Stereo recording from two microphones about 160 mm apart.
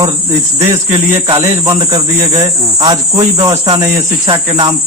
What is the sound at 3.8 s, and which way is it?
Speech, 20° right (ahead or behind).